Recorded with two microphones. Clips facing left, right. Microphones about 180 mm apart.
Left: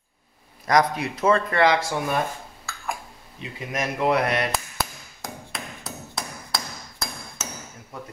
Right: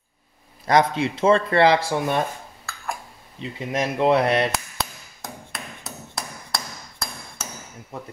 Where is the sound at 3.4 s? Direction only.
30° right (ahead or behind).